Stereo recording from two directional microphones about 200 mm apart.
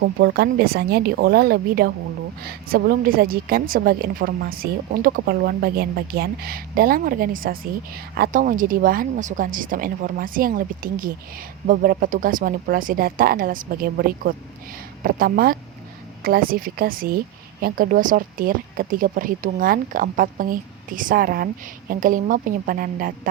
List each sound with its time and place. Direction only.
0.0 s speech: 55° right (ahead or behind)